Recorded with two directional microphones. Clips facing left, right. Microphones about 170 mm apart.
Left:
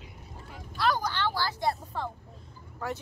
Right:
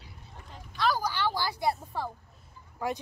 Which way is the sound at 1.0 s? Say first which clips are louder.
Even; 10° right (ahead or behind).